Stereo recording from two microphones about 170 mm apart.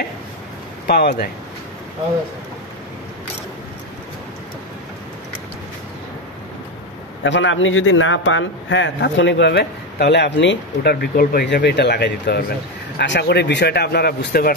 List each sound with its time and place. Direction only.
0.8 s speech: 65° left (ahead or behind)
7.2 s a man's voice: 90° left; by 14.5 s 65° left (ahead or behind)